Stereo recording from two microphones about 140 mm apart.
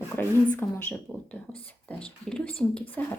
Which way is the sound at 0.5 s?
10° left (ahead or behind).